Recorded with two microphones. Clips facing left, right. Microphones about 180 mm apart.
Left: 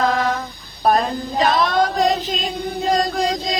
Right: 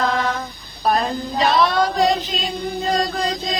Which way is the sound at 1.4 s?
50° left (ahead or behind).